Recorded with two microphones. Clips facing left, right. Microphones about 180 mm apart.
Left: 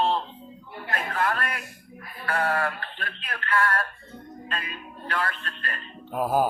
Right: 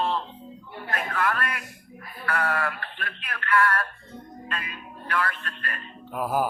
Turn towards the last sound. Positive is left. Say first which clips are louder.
# left 2 dB
turn(degrees=25)  # may be behind; listen again after turning